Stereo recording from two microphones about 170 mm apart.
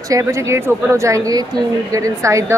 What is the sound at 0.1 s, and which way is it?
A woman's voice, 15° right (ahead or behind).